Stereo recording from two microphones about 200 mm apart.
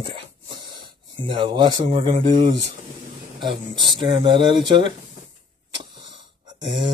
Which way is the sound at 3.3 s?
25° right (ahead or behind).